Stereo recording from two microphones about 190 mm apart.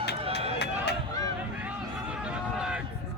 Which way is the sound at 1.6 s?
5° right (ahead or behind).